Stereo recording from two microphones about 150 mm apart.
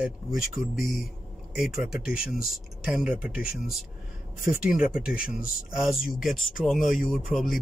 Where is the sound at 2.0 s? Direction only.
80° left.